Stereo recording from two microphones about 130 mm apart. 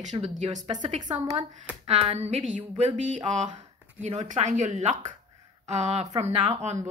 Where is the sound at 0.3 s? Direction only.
65° right (ahead or behind).